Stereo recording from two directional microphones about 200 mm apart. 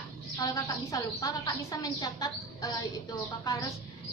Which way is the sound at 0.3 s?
15° left (ahead or behind).